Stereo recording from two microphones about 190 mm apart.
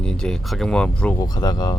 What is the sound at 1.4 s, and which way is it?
Speech, 20° left (ahead or behind).